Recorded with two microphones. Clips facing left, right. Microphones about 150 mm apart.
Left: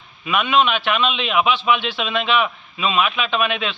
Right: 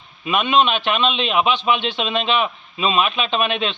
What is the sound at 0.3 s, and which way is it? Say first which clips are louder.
Speech: right 1 dB; 20° right (ahead or behind).